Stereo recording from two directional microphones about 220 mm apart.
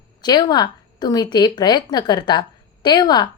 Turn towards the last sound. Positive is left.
turn(degrees=20)  # may be behind; listen again after turning